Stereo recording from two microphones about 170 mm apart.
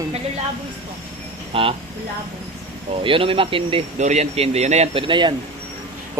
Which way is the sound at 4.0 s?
45° right (ahead or behind).